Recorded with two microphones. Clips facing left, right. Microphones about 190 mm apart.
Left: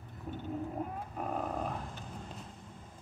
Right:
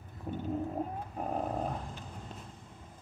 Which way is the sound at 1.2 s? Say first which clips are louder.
Right 2 dB; 30° right (ahead or behind).